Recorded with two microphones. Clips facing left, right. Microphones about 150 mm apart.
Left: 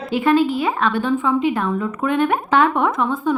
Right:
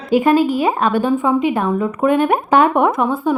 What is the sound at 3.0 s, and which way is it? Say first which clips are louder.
Speech: right 3 dB; 50° right (ahead or behind).